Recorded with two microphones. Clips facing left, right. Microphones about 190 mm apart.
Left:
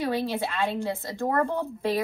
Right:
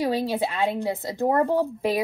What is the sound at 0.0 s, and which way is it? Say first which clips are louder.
A woman's voice: right 3 dB; 15° right (ahead or behind).